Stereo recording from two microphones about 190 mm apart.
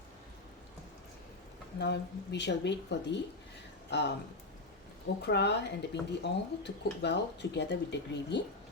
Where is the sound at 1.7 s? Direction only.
65° left (ahead or behind).